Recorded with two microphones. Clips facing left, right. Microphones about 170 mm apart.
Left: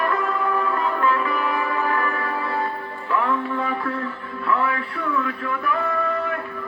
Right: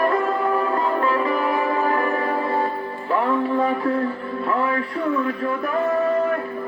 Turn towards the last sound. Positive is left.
turn(degrees=-35)  # may be behind; listen again after turning